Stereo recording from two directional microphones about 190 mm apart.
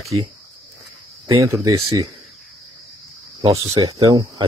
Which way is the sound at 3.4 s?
20° right (ahead or behind).